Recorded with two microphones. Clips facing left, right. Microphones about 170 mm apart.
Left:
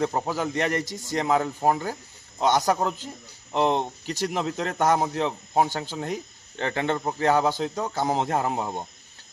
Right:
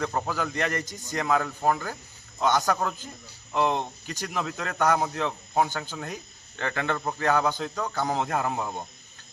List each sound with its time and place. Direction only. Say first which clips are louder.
0.0 s speech: left 3 dB; 25° left (ahead or behind)
0.8 s a man's voice: left 5 dB; 90° left
1.1 s speech: left 2 dB; 25° left (ahead or behind)